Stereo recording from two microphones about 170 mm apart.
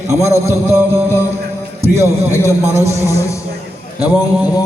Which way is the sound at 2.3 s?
15° left (ahead or behind).